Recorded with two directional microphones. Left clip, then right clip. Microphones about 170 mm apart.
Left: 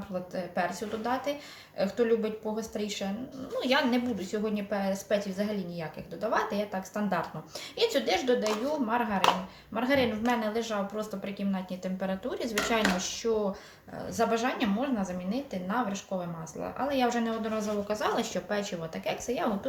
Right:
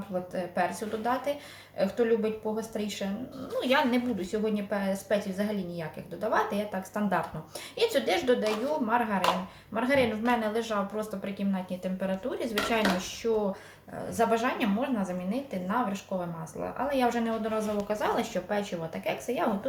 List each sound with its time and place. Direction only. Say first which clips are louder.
0.3 s speech: right 1 dB; 10° right (ahead or behind)
14.2 s speech: right 1 dB; 10° right (ahead or behind)